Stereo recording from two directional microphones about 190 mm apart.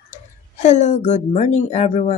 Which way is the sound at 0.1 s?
40° left (ahead or behind).